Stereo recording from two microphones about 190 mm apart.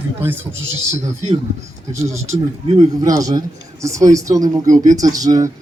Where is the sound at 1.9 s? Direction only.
15° right (ahead or behind).